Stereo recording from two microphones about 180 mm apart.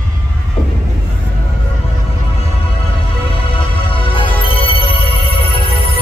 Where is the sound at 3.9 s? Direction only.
30° left (ahead or behind).